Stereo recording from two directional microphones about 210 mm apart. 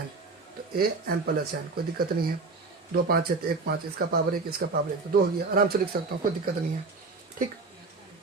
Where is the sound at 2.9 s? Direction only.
45° right (ahead or behind).